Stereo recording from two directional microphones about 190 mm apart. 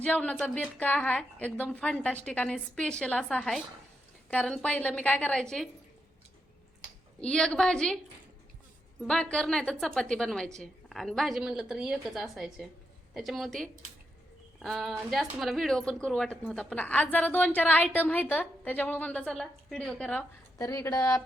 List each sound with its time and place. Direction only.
0.0 s a woman's voice: 5° left (ahead or behind)
7.2 s speech: 5° left (ahead or behind)
9.0 s speech: 5° left (ahead or behind)
20.6 s a woman's voice: 20° left (ahead or behind)